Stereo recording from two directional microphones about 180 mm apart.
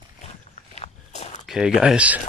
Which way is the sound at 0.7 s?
40° left (ahead or behind).